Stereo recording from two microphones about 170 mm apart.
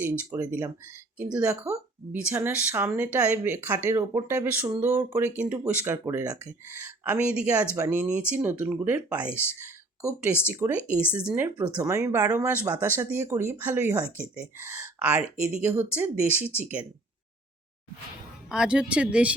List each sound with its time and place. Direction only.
0.0 s speech: 10° right (ahead or behind)
1.7 s speech: 15° right (ahead or behind)
10.4 s speech: 15° right (ahead or behind)
18.4 s speech: 5° right (ahead or behind)